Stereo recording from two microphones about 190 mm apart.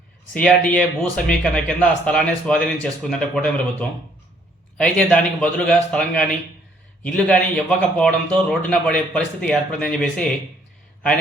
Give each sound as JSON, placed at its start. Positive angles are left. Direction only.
{"t": 0.7, "sound": "a man's voice", "side_deg": 5}